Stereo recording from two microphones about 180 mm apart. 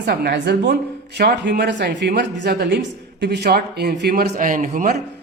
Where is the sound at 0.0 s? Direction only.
60° right (ahead or behind).